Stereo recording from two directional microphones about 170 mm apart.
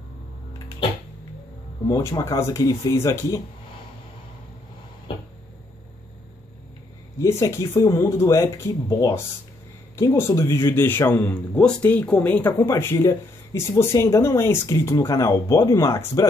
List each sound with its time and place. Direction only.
1.9 s speech: 20° left (ahead or behind)
7.2 s speech: 15° left (ahead or behind)